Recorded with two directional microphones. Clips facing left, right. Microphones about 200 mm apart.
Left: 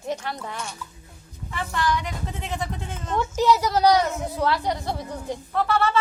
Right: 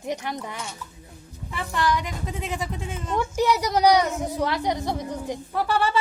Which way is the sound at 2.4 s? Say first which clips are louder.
Even; 10° right (ahead or behind).